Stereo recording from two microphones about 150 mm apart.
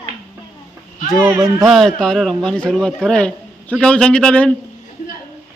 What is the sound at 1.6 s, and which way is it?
A man's voice, centre (ahead or behind).